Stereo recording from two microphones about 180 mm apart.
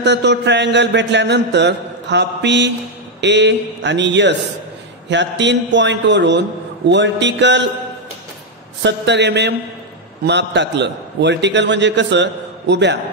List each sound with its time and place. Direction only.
0.0 s a man's voice: 70° right (ahead or behind)
8.8 s a man's voice: 75° right (ahead or behind)